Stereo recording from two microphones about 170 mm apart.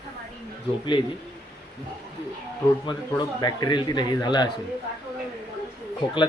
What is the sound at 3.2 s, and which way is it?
A man's voice, 25° left (ahead or behind).